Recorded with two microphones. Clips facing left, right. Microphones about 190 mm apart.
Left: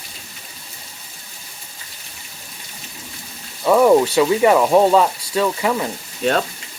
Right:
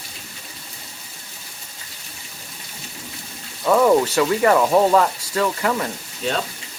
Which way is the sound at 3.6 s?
15° left (ahead or behind).